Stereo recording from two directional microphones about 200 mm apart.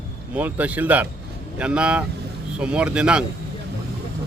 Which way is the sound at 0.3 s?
10° right (ahead or behind).